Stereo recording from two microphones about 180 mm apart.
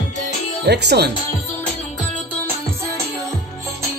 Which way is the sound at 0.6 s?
65° right (ahead or behind).